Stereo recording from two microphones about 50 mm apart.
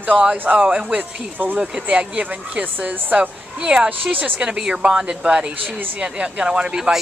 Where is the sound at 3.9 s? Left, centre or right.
Right.